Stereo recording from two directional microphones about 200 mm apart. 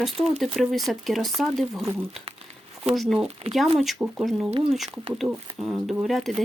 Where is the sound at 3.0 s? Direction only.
Centre (ahead or behind).